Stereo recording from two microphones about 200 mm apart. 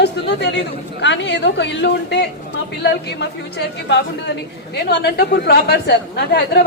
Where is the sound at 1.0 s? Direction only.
60° left (ahead or behind).